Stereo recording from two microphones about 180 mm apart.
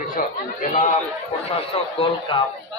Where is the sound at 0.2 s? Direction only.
45° left (ahead or behind).